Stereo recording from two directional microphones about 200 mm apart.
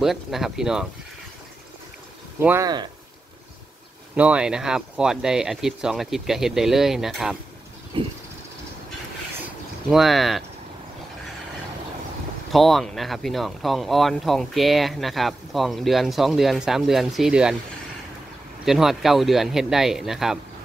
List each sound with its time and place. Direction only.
0.0 s speech: centre (ahead or behind)
2.4 s speech: 15° right (ahead or behind)
4.1 s speech: 5° right (ahead or behind)
7.9 s vehicle: 25° right (ahead or behind)
9.8 s speech: centre (ahead or behind)
12.5 s speech: centre (ahead or behind)
18.7 s speech: centre (ahead or behind)